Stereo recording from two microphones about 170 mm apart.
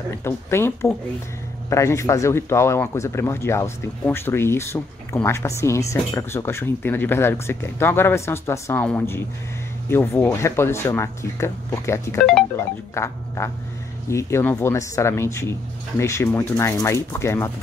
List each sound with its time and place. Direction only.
0.2 s speech: 15° left (ahead or behind)